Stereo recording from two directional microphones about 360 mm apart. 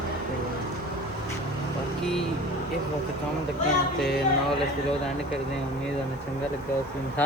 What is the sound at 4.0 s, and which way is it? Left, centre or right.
Speech, centre.